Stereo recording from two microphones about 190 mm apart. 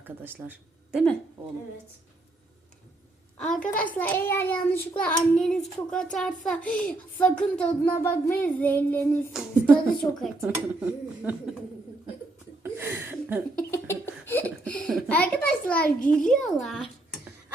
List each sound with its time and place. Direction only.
0.0 s speech: 10° right (ahead or behind)
3.3 s a child's voice: 5° left (ahead or behind)
12.6 s a sound: 10° right (ahead or behind)
13.7 s giggle: 15° left (ahead or behind)
15.8 s a child's voice: 50° left (ahead or behind)
16.3 s a child's voice: centre (ahead or behind)